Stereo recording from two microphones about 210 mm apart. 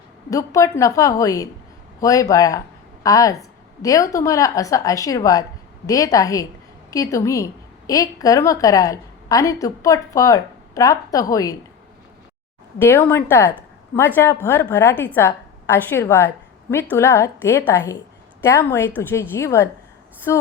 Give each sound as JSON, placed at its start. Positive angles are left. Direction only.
{"t": 0.3, "sound": "a woman's voice", "side_deg": 15}
{"t": 12.8, "sound": "a woman's voice", "side_deg": 10}